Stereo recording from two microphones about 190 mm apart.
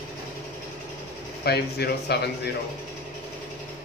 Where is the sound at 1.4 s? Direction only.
55° left (ahead or behind).